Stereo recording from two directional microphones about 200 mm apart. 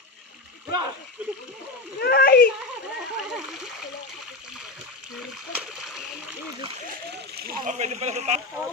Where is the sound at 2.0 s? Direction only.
50° left (ahead or behind).